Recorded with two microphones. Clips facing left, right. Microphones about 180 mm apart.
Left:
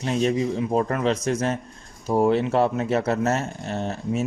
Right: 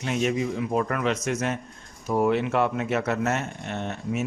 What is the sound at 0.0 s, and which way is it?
Speech, 35° left (ahead or behind).